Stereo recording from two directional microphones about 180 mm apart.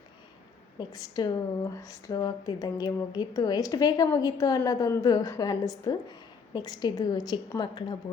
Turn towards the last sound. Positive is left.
turn(degrees=25)  # may be behind; listen again after turning